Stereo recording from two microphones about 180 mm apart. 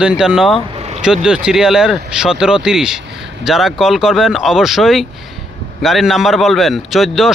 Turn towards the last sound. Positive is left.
turn(degrees=0)  # may be behind; listen again after turning